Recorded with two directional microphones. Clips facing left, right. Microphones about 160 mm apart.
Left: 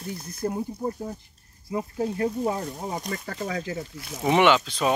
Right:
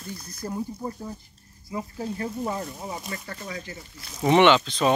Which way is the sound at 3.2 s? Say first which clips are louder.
Left 6 dB; 90° left.